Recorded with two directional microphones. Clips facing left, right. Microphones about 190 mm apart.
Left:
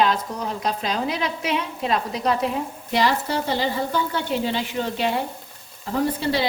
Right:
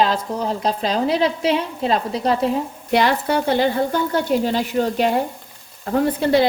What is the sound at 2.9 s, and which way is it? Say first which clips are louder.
Speech: right 4 dB; 60° right (ahead or behind).